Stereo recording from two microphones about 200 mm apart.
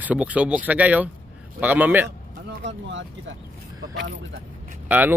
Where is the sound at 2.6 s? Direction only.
65° right (ahead or behind).